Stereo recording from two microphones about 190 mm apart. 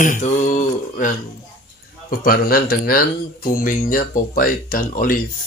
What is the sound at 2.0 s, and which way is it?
Speech, 50° left (ahead or behind).